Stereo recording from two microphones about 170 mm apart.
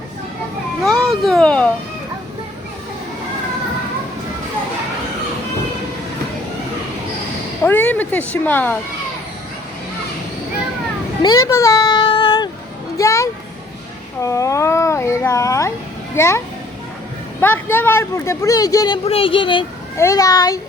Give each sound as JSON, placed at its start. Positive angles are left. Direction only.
{"t": 1.0, "sound": "speech", "side_deg": 0}
{"t": 7.6, "sound": "speech", "side_deg": 10}
{"t": 11.2, "sound": "a sound", "side_deg": 20}
{"t": 13.0, "sound": "a child's voice", "side_deg": 20}
{"t": 17.4, "sound": "speech", "side_deg": 10}
{"t": 19.0, "sound": "speech", "side_deg": 35}
{"t": 20.0, "sound": "a child's voice", "side_deg": 20}